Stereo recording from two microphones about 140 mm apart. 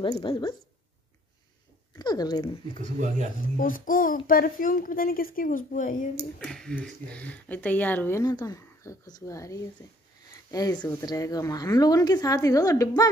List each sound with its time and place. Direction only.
0.0 s speech: 40° left (ahead or behind)
2.0 s speech: 30° left (ahead or behind)
2.7 s speech: 65° right (ahead or behind)
3.5 s a child's voice: 80° left
6.4 s speech: 5° left (ahead or behind)
8.2 s a woman's voice: 30° left (ahead or behind)